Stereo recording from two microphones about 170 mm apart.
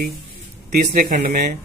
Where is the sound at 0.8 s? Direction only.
50° right (ahead or behind).